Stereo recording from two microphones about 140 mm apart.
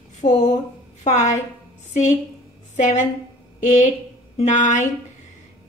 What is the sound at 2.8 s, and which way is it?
Speech, 60° left (ahead or behind).